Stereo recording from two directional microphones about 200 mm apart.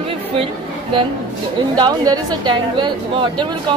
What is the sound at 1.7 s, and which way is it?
Speech, 20° right (ahead or behind).